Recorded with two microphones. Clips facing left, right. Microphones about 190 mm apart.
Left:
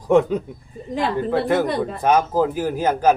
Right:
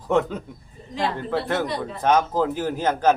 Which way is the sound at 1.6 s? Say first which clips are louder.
Left 5 dB; 55° left (ahead or behind).